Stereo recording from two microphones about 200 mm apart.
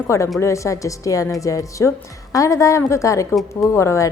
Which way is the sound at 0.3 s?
15° left (ahead or behind).